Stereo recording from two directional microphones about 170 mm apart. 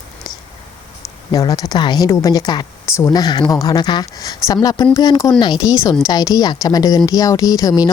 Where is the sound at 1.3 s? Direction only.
20° left (ahead or behind).